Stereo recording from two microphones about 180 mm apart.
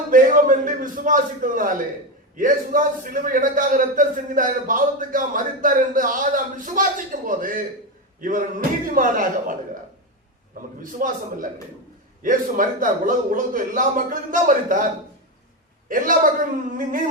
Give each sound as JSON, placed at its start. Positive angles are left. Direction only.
{"t": 0.1, "sound": "a man's voice", "side_deg": -50}
{"t": 10.8, "sound": "a man's voice", "side_deg": -50}
{"t": 15.9, "sound": "a man's voice", "side_deg": -50}